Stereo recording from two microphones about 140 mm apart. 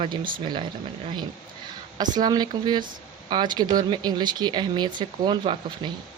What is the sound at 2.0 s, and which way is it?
Speech, 30° right (ahead or behind).